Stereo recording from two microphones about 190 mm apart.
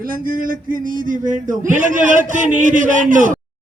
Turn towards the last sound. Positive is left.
turn(degrees=-45)  # may be behind; listen again after turning